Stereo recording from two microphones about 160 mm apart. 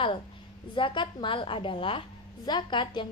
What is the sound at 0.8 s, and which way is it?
A woman's voice, 30° left (ahead or behind).